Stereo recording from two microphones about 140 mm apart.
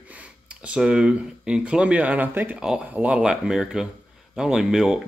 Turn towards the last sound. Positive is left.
turn(degrees=-5)  # may be behind; listen again after turning